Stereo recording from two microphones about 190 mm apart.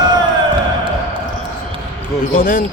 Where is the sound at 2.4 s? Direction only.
45° left (ahead or behind).